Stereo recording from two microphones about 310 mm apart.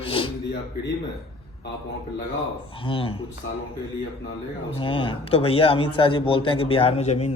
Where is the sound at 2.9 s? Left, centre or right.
Centre.